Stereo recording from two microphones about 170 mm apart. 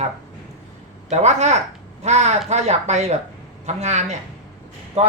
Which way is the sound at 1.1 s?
40° right (ahead or behind).